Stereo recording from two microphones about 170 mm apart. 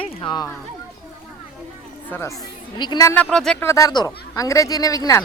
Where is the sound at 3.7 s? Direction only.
20° left (ahead or behind).